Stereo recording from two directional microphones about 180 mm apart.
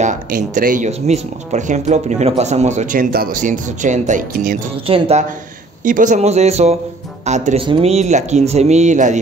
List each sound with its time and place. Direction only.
0.0 s speech: 45° right (ahead or behind)
4.8 s speech: 30° right (ahead or behind)
5.9 s speech: 45° right (ahead or behind)